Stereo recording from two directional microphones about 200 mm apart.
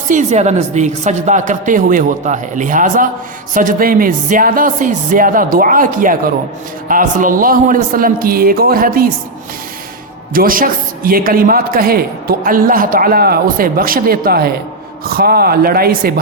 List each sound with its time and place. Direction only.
0.1 s a woman's voice: 35° right (ahead or behind)
10.3 s speech: 45° right (ahead or behind)